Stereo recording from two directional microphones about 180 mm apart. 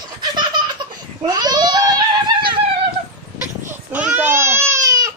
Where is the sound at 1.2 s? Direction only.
25° right (ahead or behind).